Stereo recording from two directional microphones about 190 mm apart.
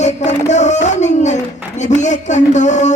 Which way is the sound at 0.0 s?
40° left (ahead or behind).